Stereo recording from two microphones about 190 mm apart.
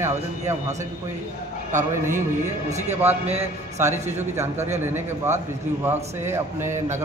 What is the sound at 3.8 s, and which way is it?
Speech, 10° right (ahead or behind).